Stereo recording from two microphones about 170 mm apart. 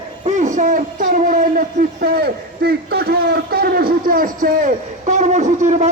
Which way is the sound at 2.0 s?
60° right (ahead or behind).